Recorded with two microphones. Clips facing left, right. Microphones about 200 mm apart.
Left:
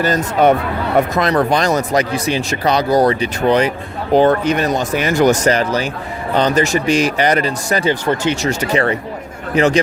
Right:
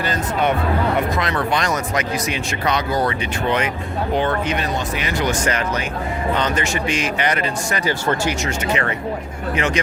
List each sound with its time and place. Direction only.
0.0 s speech: 40° left (ahead or behind)
7.9 s speech: 20° left (ahead or behind)
8.4 s speech: 35° left (ahead or behind)